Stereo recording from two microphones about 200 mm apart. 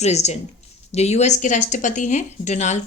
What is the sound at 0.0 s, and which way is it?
A woman's voice, 35° left (ahead or behind).